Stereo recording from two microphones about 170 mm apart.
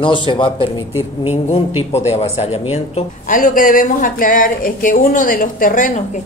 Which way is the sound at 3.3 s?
55° left (ahead or behind).